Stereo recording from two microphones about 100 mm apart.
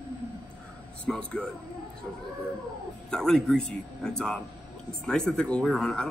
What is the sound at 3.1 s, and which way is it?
A man's voice, 5° left (ahead or behind).